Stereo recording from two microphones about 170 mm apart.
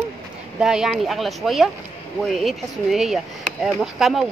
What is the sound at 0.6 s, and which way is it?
Speech, 5° right (ahead or behind).